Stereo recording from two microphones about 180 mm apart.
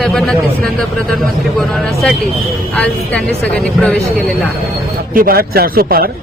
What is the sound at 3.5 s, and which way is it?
Speech, 5° left (ahead or behind).